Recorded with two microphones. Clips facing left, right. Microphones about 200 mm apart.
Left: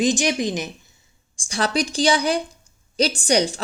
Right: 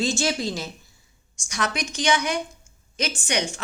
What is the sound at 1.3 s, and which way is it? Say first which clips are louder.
A woman's voice: left 5 dB; 30° left (ahead or behind).